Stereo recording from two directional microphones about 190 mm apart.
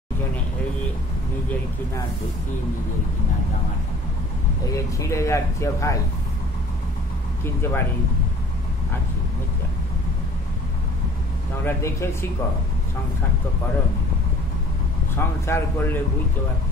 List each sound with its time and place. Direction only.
4.7 s speech: 15° left (ahead or behind)
7.4 s speech: 10° left (ahead or behind)
11.6 s speech: 15° left (ahead or behind)
15.1 s speech: 15° left (ahead or behind)